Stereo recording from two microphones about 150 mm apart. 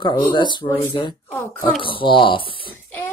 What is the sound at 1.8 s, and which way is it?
Speech, 35° left (ahead or behind).